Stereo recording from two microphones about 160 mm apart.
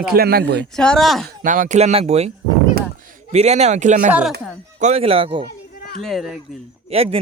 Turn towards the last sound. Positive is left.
turn(degrees=-40)  # may be behind; listen again after turning